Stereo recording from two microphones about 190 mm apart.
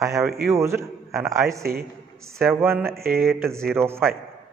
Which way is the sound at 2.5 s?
10° right (ahead or behind).